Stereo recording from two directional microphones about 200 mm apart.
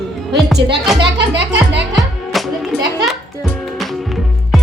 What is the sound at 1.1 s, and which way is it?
Music, 65° right (ahead or behind).